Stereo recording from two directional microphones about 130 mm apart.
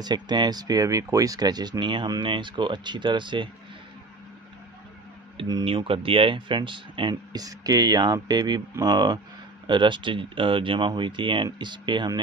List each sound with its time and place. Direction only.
0.0 s speech: 35° right (ahead or behind)
5.4 s speech: 40° right (ahead or behind)